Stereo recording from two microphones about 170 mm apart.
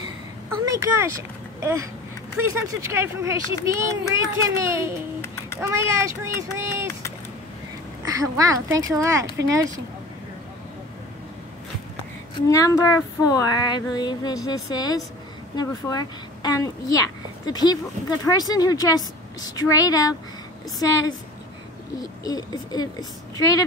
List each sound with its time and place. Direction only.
0.5 s speech: 15° right (ahead or behind)
8.0 s speech: 20° right (ahead or behind)
12.4 s female singing: 20° left (ahead or behind)
22.2 s female singing: 20° left (ahead or behind)